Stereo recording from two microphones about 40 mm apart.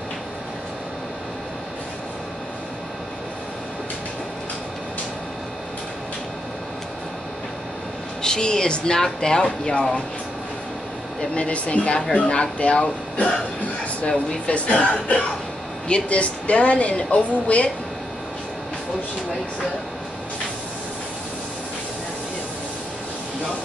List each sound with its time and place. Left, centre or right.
8.2 s speech: centre
11.3 s a woman's voice: left